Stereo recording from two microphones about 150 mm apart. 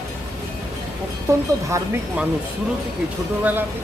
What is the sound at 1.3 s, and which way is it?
Speech, 20° right (ahead or behind).